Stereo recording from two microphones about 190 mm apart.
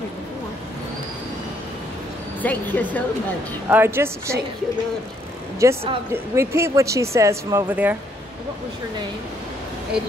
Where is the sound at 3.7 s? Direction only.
10° right (ahead or behind).